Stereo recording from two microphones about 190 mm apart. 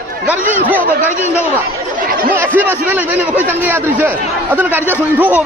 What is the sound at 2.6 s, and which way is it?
A man's voice, 10° right (ahead or behind).